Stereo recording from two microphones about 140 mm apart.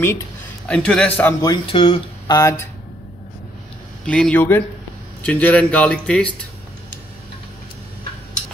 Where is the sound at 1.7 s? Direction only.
35° left (ahead or behind).